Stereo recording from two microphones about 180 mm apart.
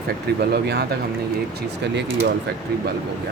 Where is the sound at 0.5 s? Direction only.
65° right (ahead or behind).